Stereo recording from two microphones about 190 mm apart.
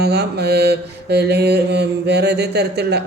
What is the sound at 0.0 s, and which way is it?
Speech, 60° right (ahead or behind).